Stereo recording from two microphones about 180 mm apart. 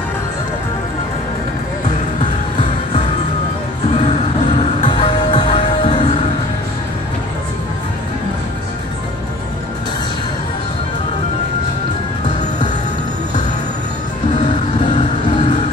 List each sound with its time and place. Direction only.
3.9 s music: 30° left (ahead or behind)